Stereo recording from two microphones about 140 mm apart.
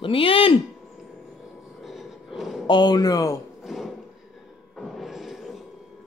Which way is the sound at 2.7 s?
30° left (ahead or behind).